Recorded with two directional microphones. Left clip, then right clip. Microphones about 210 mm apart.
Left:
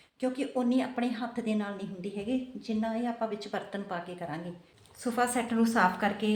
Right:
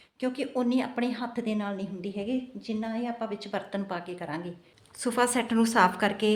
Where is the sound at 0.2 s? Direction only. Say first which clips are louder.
Right 1 dB; 40° right (ahead or behind).